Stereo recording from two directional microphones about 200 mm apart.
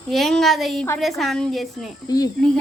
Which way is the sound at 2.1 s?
20° left (ahead or behind).